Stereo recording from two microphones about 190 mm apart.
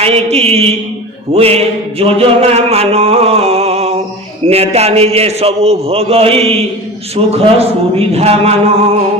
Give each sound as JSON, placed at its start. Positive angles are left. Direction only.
{"t": 0.0, "sound": "mantra", "side_deg": -30}